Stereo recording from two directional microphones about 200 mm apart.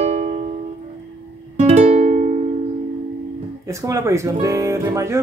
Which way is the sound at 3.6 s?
15° right (ahead or behind).